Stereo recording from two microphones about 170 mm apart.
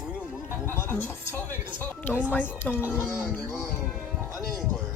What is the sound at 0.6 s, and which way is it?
A woman's voice, 15° left (ahead or behind).